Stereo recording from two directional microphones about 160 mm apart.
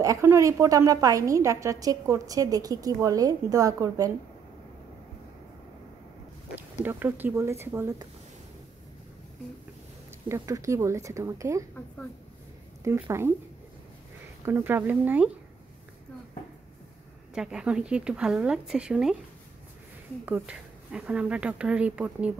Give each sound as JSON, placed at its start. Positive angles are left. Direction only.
{"t": 0.0, "sound": "a woman's voice", "side_deg": -15}
{"t": 6.5, "sound": "speech", "side_deg": -10}
{"t": 10.2, "sound": "a woman's voice", "side_deg": -20}
{"t": 14.4, "sound": "speech", "side_deg": -15}
{"t": 17.3, "sound": "a woman's voice", "side_deg": -5}
{"t": 20.2, "sound": "speech", "side_deg": -10}